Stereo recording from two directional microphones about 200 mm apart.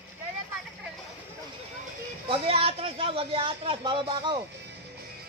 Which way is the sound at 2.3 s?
30° right (ahead or behind).